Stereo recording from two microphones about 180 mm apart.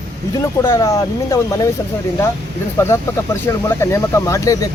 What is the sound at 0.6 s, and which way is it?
Speech, 15° left (ahead or behind).